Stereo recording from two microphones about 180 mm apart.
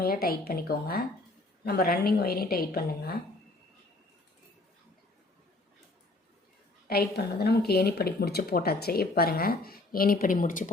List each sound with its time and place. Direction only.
0.0 s speech: 55° left (ahead or behind)
6.8 s speech: 60° left (ahead or behind)